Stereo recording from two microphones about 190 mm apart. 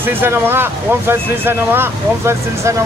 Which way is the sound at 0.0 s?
10° right (ahead or behind).